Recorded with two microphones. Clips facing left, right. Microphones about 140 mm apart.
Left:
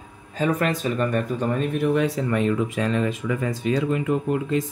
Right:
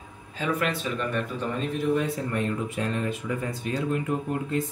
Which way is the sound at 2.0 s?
90° left.